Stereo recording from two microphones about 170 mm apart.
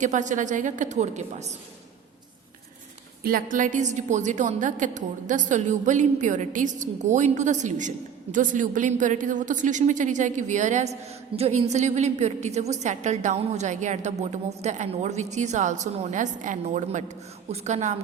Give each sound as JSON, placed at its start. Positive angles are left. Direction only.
{"t": 0.0, "sound": "a woman's voice", "side_deg": -45}
{"t": 3.2, "sound": "a woman's voice", "side_deg": -55}